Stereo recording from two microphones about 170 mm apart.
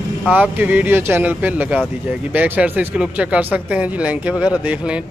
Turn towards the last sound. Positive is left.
turn(degrees=-5)  # may be behind; listen again after turning